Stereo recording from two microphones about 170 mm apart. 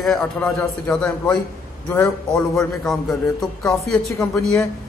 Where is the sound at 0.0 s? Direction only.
Centre (ahead or behind).